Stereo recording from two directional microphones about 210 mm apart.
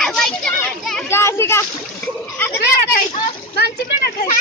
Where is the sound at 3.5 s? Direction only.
45° left (ahead or behind).